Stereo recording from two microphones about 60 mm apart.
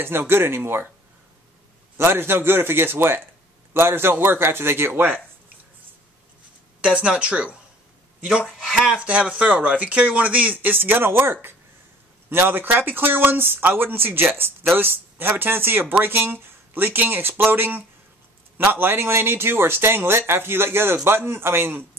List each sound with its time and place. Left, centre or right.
0.0 s speech: right
2.0 s speech: right
6.8 s speech: centre; by 21.8 s right